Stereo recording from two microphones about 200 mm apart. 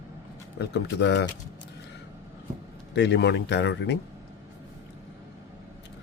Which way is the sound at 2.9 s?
60° left (ahead or behind).